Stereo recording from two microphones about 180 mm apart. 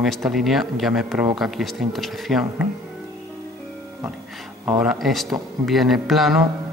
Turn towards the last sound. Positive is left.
turn(degrees=0)  # may be behind; listen again after turning